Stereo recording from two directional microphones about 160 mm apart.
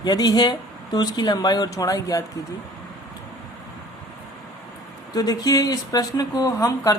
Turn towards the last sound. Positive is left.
turn(degrees=20)  # may be behind; listen again after turning